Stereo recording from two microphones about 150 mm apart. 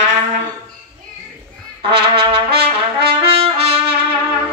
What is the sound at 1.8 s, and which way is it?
Trumpet, 35° right (ahead or behind).